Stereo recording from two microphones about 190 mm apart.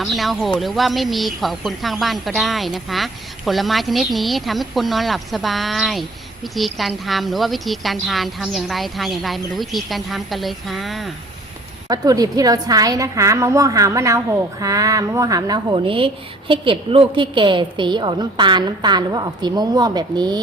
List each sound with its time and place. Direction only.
0.0 s a woman's voice: centre (ahead or behind)
11.9 s a woman's voice: 20° right (ahead or behind)